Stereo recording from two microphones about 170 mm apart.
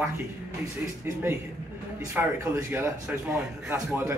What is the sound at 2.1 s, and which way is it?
Speech, 15° right (ahead or behind).